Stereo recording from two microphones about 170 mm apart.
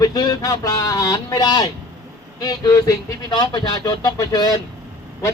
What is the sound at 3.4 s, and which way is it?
Speech, 25° left (ahead or behind).